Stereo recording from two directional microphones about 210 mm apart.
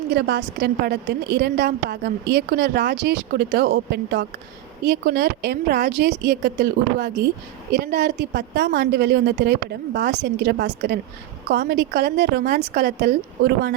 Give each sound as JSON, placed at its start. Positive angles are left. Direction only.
{"t": 0.1, "sound": "a woman's voice", "side_deg": -55}